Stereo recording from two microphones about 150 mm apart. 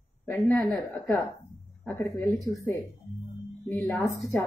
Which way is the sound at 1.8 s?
10° left (ahead or behind).